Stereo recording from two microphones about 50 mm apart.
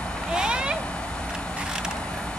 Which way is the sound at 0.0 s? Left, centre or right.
Centre.